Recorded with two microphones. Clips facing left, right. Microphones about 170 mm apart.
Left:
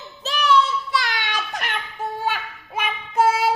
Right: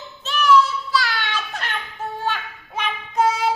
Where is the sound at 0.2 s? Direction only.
35° left (ahead or behind).